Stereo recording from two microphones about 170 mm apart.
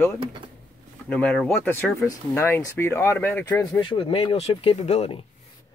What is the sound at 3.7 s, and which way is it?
Speech, 30° left (ahead or behind).